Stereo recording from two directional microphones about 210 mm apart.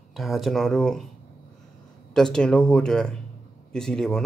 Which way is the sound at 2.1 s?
5° left (ahead or behind).